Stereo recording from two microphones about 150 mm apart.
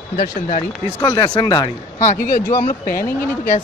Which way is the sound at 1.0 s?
25° left (ahead or behind).